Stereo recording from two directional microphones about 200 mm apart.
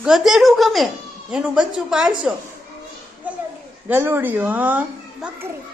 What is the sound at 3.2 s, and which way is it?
Children playing, 5° right (ahead or behind).